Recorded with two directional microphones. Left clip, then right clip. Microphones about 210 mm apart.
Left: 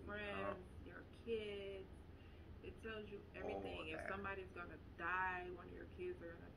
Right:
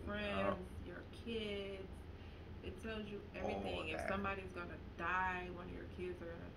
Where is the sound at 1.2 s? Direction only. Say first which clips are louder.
Right 1 dB; 60° right (ahead or behind).